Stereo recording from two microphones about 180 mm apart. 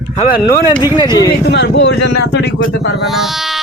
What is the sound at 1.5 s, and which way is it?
Speech, 80° left.